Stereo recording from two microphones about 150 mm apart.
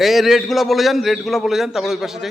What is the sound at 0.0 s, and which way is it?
A man's voice, centre (ahead or behind).